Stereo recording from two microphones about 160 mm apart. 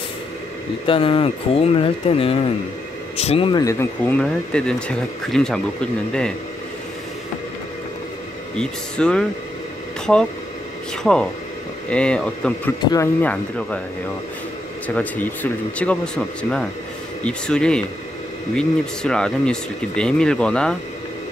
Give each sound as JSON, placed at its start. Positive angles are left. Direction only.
{"t": 0.8, "sound": "speech", "side_deg": 35}
{"t": 3.6, "sound": "speech", "side_deg": 15}
{"t": 8.5, "sound": "speech", "side_deg": 5}
{"t": 11.0, "sound": "speech", "side_deg": 5}
{"t": 15.0, "sound": "speech", "side_deg": 10}